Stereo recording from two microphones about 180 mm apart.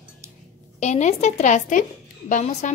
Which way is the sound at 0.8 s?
40° left (ahead or behind).